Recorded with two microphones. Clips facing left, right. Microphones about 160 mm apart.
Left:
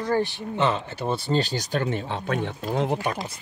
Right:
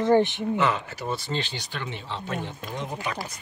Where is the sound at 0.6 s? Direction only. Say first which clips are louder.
Left 4 dB; 30° left (ahead or behind).